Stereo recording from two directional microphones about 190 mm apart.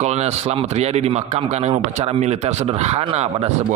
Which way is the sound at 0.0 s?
35° right (ahead or behind).